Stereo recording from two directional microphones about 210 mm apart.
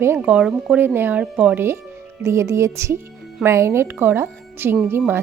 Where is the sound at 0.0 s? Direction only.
10° right (ahead or behind).